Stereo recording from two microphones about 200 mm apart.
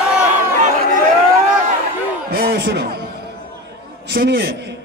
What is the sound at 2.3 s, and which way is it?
Crowd, 50° right (ahead or behind).